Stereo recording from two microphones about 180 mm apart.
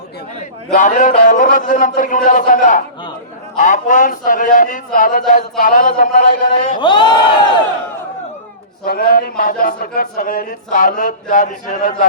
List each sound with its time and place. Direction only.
0.7 s speech: 45° left (ahead or behind)
6.7 s crowd: 25° left (ahead or behind)
8.8 s speech: 55° left (ahead or behind)